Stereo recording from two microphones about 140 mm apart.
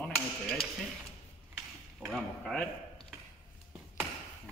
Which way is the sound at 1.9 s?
Centre (ahead or behind).